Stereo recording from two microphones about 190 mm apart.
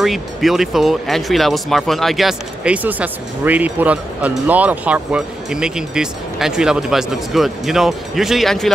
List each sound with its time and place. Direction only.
0.0 s speech: centre (ahead or behind)